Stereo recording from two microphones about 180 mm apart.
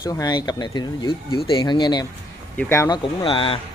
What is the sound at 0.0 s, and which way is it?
Speech, 20° left (ahead or behind).